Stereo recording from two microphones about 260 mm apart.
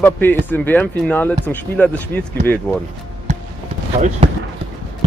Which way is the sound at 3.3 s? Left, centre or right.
Right.